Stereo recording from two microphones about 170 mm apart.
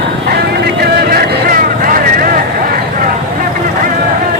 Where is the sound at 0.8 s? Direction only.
65° right (ahead or behind).